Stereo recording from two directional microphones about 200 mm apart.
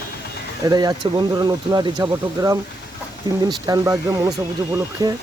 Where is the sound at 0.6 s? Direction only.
20° right (ahead or behind).